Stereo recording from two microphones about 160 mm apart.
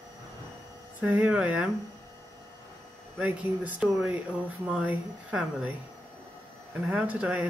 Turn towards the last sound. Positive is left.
turn(degrees=-10)  # may be behind; listen again after turning